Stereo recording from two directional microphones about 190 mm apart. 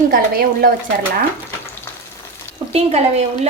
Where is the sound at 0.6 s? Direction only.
50° right (ahead or behind).